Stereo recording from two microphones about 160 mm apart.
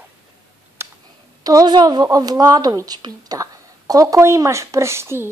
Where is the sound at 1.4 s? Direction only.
25° right (ahead or behind).